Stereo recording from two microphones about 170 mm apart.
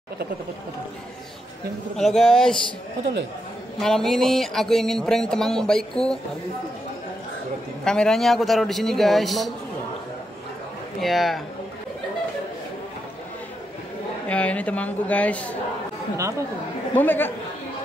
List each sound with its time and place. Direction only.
2.0 s speech: centre (ahead or behind)
3.8 s speech: centre (ahead or behind)
7.8 s speech: 5° left (ahead or behind)
11.0 s speech: centre (ahead or behind)
14.2 s speech: 10° left (ahead or behind)
16.2 s speech: 15° right (ahead or behind)
16.9 s speech: 10° left (ahead or behind)